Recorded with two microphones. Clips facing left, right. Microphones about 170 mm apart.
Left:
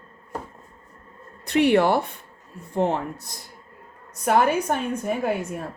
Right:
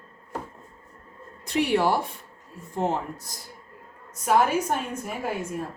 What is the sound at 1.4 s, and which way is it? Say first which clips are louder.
A woman's voice: left 4 dB; 60° left (ahead or behind).